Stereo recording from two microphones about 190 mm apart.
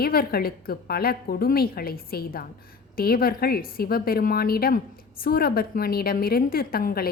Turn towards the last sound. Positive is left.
turn(degrees=50)  # may be behind; listen again after turning